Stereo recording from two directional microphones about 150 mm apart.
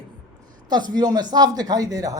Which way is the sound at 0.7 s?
30° right (ahead or behind).